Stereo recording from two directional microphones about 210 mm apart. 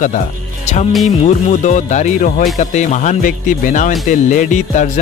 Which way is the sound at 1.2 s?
35° left (ahead or behind).